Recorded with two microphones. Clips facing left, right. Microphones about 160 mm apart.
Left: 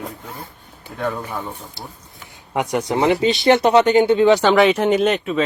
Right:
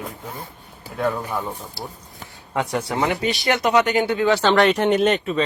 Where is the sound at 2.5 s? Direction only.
20° left (ahead or behind).